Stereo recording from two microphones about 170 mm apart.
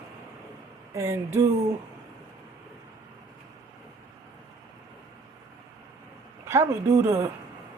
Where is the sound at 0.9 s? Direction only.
15° right (ahead or behind).